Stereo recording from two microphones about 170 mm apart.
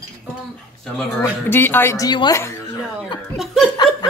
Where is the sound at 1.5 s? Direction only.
15° left (ahead or behind).